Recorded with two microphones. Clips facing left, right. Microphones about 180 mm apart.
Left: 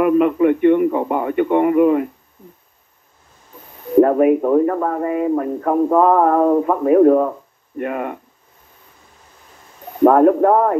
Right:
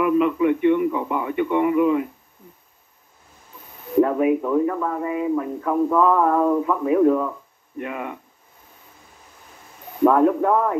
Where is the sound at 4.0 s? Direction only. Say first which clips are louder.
Left 6 dB; 50° left (ahead or behind).